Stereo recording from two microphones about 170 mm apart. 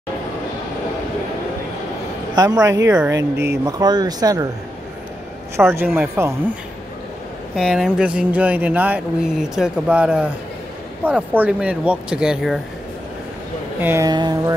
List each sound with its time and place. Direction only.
2.3 s speech: 20° right (ahead or behind)
3.2 s speech: 80° right
3.6 s speech: 25° right (ahead or behind)
5.6 s speech: 15° right (ahead or behind)
7.5 s speech: 5° right (ahead or behind)
13.7 s speech: 10° right (ahead or behind)
14.0 s speech: 25° right (ahead or behind)